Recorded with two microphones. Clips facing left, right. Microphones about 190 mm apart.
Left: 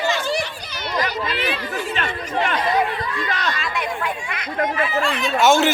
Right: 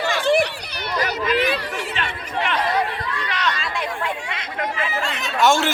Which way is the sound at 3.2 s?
40° left (ahead or behind).